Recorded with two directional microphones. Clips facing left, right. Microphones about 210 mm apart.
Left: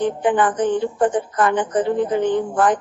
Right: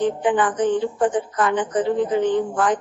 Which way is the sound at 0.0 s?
55° left (ahead or behind).